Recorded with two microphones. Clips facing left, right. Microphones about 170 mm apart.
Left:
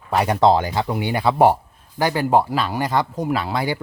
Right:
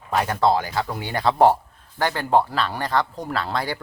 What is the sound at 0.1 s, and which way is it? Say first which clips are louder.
Speech: left 4 dB; 15° left (ahead or behind).